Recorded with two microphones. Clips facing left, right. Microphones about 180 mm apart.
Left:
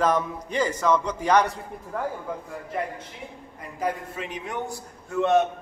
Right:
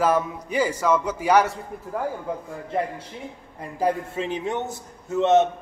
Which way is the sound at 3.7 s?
30° right (ahead or behind).